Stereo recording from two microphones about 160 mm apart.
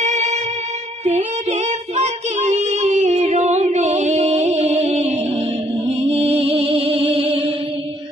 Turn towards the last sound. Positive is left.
turn(degrees=-35)  # may be behind; listen again after turning